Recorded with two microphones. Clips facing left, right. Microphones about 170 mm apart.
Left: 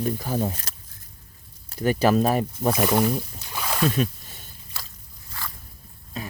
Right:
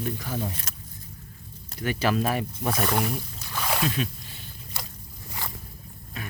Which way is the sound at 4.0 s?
45° left (ahead or behind).